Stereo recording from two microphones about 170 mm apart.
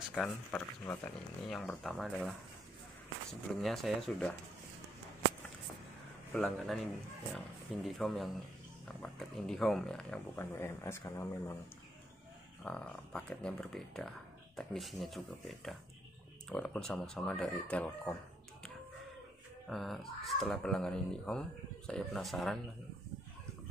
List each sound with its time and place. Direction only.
0.1 s speech: 10° left (ahead or behind)
1.5 s speech: centre (ahead or behind)
3.6 s speech: centre (ahead or behind)
6.3 s speech: 5° left (ahead or behind)
10.4 s speech: 15° left (ahead or behind)
12.6 s speech: 5° left (ahead or behind)
19.7 s speech: centre (ahead or behind)